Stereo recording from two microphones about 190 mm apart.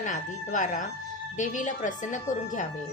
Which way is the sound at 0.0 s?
40° left (ahead or behind).